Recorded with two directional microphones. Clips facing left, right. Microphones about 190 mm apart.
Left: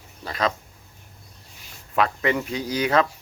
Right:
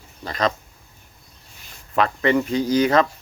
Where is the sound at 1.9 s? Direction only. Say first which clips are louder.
Right 3 dB; 5° left (ahead or behind).